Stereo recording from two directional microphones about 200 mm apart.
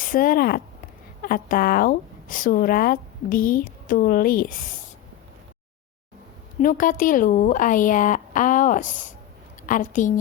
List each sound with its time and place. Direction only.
0.0 s a woman's voice: 45° left (ahead or behind)
6.6 s speech: 40° left (ahead or behind)